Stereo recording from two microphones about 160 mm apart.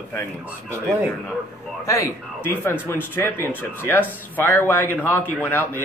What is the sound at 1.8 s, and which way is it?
Speech, 20° left (ahead or behind).